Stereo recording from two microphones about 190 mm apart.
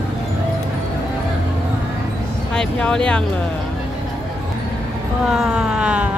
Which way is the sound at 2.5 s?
5° left (ahead or behind).